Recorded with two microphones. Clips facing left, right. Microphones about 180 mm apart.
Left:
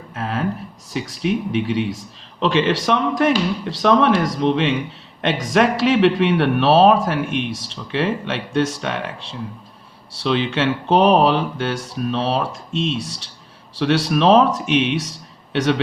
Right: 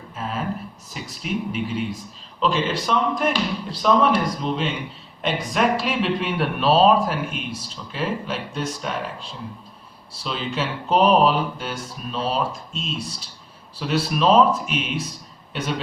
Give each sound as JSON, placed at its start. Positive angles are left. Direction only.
{"t": 0.1, "sound": "a sound", "side_deg": 75}
{"t": 0.9, "sound": "a man's voice", "side_deg": 85}
{"t": 10.1, "sound": "a man's voice", "side_deg": 80}